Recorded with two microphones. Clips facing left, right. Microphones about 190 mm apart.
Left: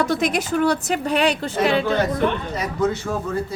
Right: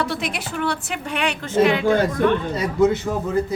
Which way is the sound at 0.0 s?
45° left (ahead or behind).